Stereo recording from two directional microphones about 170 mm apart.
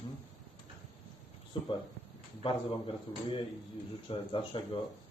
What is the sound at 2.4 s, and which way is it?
Speech, 30° left (ahead or behind).